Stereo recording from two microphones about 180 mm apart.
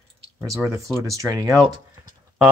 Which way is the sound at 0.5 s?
15° right (ahead or behind).